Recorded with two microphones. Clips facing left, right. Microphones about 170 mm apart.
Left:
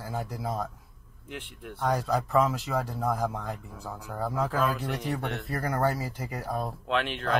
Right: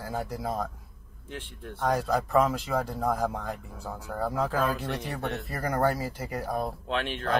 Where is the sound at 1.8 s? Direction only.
10° right (ahead or behind).